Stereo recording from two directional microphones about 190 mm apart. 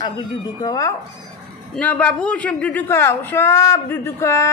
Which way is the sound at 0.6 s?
20° left (ahead or behind).